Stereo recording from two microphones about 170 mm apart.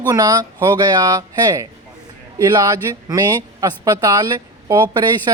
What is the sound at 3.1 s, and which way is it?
Speech, 20° right (ahead or behind).